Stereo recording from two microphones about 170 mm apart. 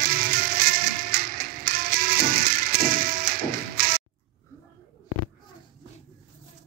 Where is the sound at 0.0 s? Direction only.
60° right (ahead or behind).